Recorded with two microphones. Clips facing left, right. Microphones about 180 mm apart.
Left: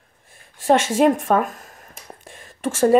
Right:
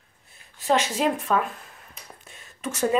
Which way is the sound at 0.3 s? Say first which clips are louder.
Left 6 dB; 50° left (ahead or behind).